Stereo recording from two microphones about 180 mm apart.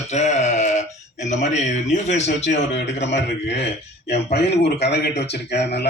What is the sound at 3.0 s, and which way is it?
A man's voice, 75° left (ahead or behind).